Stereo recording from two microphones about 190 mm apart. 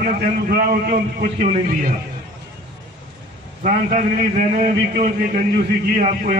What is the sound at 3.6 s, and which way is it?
A man's voice, 45° right (ahead or behind).